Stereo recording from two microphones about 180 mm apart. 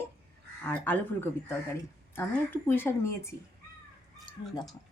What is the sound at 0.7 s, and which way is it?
Speech, 10° left (ahead or behind).